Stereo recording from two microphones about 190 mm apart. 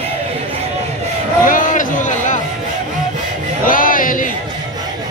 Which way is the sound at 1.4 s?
45° left (ahead or behind).